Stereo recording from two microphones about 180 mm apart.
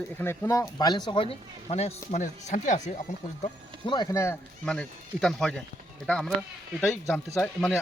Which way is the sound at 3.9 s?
20° left (ahead or behind).